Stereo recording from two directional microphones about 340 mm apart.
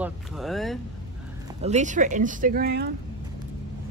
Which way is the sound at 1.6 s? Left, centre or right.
Centre.